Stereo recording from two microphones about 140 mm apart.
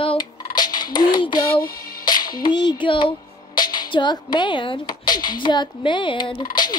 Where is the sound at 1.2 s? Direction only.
35° left (ahead or behind).